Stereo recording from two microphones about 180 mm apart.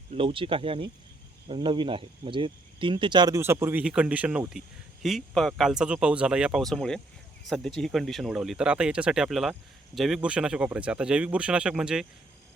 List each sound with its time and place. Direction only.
0.1 s speech: 30° right (ahead or behind); by 12.0 s 5° right (ahead or behind)